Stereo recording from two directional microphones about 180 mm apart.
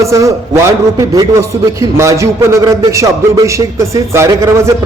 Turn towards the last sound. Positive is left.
turn(degrees=-15)  # may be behind; listen again after turning